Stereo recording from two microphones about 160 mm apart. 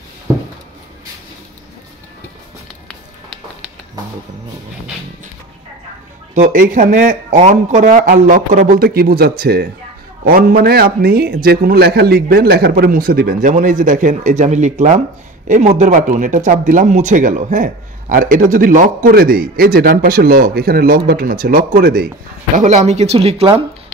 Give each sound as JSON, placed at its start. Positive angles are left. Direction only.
{"t": 6.3, "sound": "a man's voice", "side_deg": -50}
{"t": 22.6, "sound": "speech", "side_deg": -50}